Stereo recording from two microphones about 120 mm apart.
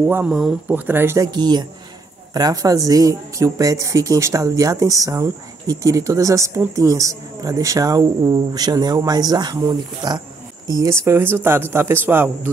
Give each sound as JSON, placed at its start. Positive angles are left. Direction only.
{"t": 0.0, "sound": "speech", "side_deg": -10}
{"t": 0.7, "sound": "speech", "side_deg": -15}
{"t": 1.2, "sound": "speech", "side_deg": -35}